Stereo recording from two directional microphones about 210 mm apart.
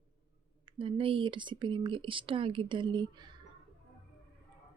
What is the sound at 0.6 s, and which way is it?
Speech, 25° right (ahead or behind).